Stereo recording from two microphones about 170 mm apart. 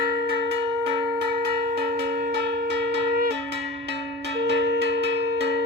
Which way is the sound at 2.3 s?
80° right.